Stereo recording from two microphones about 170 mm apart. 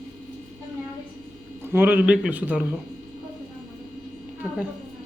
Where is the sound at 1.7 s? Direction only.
10° right (ahead or behind).